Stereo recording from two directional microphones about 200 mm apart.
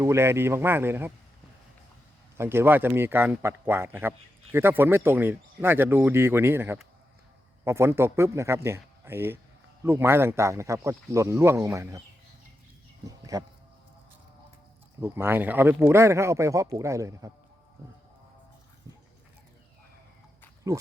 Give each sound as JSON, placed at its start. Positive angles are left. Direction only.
{"t": 0.0, "sound": "speech", "side_deg": -15}
{"t": 2.4, "sound": "speech", "side_deg": -10}
{"t": 13.1, "sound": "a sound", "side_deg": -15}
{"t": 15.0, "sound": "speech", "side_deg": -10}